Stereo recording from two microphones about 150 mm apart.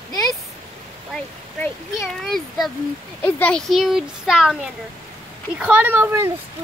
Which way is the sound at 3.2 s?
10° left (ahead or behind).